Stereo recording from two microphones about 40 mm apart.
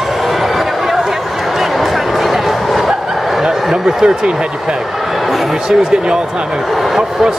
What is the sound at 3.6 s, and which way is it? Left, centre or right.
Speech, centre.